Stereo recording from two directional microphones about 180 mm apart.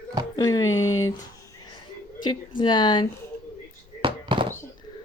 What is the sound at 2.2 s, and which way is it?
Speech, 25° left (ahead or behind).